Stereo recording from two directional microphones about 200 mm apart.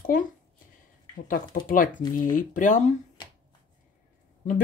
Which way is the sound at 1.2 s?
45° left (ahead or behind).